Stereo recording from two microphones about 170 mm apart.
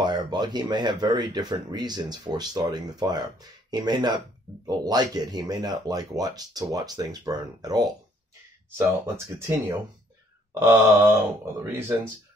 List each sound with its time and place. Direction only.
0.0 s speech: 25° right (ahead or behind)
8.7 s wail: 15° right (ahead or behind)